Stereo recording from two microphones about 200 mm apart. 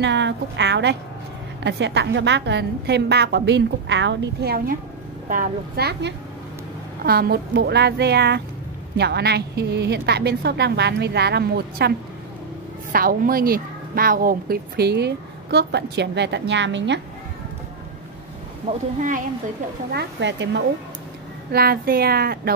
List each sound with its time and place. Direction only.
0.0 s a woman's voice: 60° right (ahead or behind)
12.9 s a woman's voice: 45° right (ahead or behind); by 17.0 s 65° right (ahead or behind)
18.7 s speech: 40° right (ahead or behind)
19.9 s a woman's voice: 55° right (ahead or behind)
21.5 s speech: 50° right (ahead or behind)